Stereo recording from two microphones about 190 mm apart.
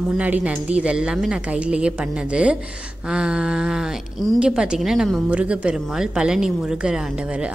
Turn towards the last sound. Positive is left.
turn(degrees=-5)  # may be behind; listen again after turning